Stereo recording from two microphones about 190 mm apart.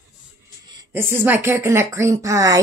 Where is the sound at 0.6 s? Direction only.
20° right (ahead or behind).